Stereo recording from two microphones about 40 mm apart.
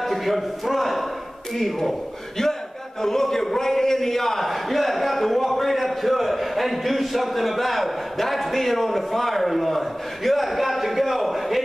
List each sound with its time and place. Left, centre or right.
0.0 s a man's voice: centre